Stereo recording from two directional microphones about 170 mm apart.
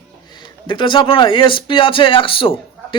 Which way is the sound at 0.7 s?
30° left (ahead or behind).